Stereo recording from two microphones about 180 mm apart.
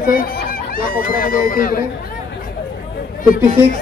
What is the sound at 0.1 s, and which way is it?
Speech, 55° left (ahead or behind).